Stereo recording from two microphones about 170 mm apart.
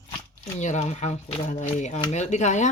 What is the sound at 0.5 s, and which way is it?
A woman's voice, 45° left (ahead or behind).